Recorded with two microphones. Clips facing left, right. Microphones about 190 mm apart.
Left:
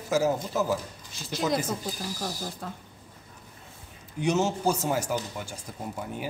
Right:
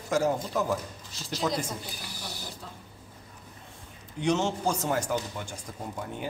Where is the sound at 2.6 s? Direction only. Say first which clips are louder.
Left 7 dB; 55° left (ahead or behind).